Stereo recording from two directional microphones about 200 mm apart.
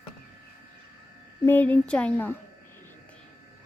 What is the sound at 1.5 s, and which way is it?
Speech, 10° left (ahead or behind).